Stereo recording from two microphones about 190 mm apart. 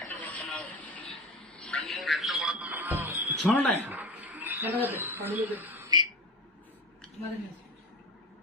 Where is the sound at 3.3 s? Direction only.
Centre (ahead or behind).